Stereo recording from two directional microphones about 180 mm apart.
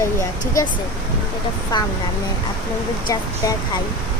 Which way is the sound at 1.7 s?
25° left (ahead or behind).